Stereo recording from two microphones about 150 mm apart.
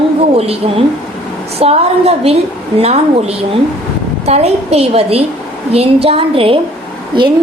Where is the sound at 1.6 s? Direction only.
45° right (ahead or behind).